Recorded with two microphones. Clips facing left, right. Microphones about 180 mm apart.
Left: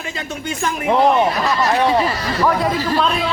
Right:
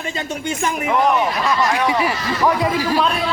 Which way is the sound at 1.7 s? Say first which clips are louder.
Left 3 dB; 35° left (ahead or behind).